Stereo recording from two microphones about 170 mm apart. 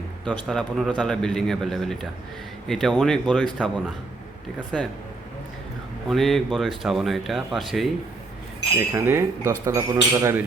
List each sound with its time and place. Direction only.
0.3 s a man's voice: centre (ahead or behind)
6.1 s a man's voice: centre (ahead or behind)
8.9 s speech: 15° right (ahead or behind)